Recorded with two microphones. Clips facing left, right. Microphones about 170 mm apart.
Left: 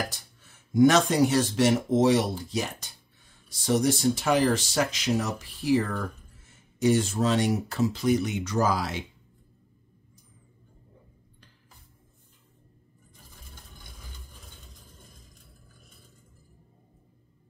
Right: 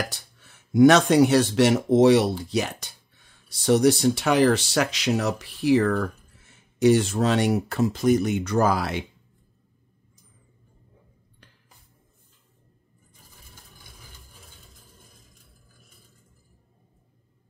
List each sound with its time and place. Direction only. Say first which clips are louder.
0.4 s speech: right 4 dB; 70° right (ahead or behind)